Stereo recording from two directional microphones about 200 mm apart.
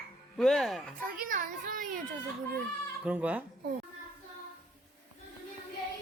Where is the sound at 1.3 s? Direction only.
40° right (ahead or behind).